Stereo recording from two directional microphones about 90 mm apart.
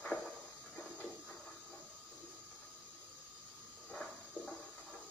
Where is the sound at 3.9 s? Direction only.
10° left (ahead or behind).